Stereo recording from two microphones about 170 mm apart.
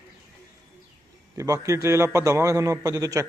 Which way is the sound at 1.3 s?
20° right (ahead or behind).